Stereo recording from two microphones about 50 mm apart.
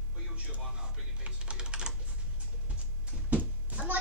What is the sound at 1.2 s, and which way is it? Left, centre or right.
Typing, centre.